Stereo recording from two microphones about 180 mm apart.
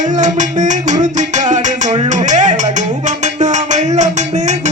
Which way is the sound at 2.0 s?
45° right (ahead or behind).